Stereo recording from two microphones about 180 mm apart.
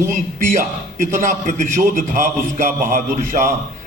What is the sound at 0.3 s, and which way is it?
A man's voice, 50° right (ahead or behind).